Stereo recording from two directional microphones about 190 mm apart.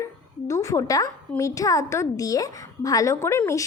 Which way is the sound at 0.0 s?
15° left (ahead or behind).